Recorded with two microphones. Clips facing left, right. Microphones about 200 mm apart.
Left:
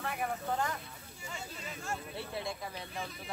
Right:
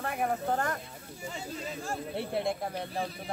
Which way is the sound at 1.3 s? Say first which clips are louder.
Right 6 dB; 35° right (ahead or behind).